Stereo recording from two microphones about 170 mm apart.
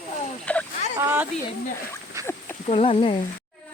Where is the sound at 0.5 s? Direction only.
5° left (ahead or behind).